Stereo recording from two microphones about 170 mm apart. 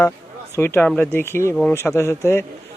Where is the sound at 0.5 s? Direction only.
15° left (ahead or behind).